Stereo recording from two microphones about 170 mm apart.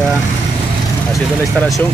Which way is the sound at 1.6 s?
Centre (ahead or behind).